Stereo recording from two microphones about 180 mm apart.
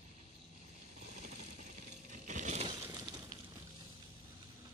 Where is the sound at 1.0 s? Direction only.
40° right (ahead or behind).